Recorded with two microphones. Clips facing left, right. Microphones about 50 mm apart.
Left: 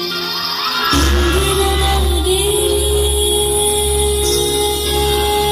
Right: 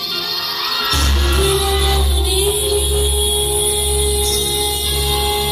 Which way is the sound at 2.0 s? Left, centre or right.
Left.